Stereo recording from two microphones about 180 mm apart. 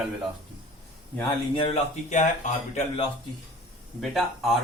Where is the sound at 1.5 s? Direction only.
30° left (ahead or behind).